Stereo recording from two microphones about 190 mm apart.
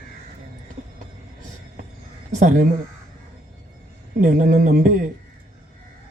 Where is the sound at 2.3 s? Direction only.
40° right (ahead or behind).